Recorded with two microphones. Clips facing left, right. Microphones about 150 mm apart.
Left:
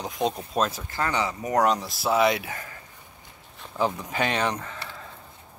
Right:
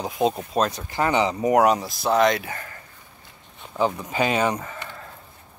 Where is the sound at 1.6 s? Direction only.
5° right (ahead or behind).